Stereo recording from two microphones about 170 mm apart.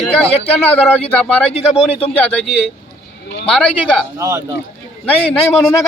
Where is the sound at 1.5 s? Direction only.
35° left (ahead or behind).